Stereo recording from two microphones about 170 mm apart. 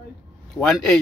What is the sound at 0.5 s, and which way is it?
Speech, centre (ahead or behind).